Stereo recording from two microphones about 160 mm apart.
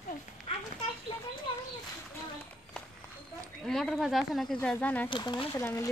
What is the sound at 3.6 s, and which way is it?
Speech, centre (ahead or behind).